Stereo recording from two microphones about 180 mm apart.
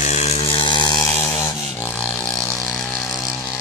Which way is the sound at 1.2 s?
15° left (ahead or behind).